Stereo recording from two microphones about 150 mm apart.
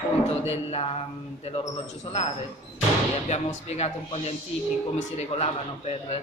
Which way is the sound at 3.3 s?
50° left (ahead or behind).